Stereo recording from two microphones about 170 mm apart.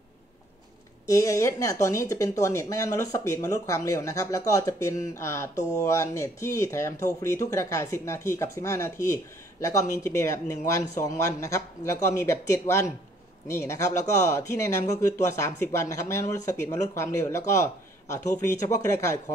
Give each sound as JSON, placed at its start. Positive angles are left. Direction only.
{"t": 1.0, "sound": "speech", "side_deg": 20}